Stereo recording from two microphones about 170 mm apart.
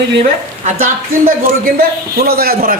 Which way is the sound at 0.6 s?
55° right (ahead or behind).